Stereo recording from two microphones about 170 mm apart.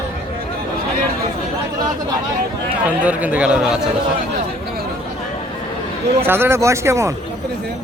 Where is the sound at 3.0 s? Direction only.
10° right (ahead or behind).